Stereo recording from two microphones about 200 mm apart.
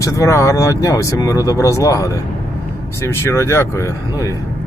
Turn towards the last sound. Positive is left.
turn(degrees=15)  # may be behind; listen again after turning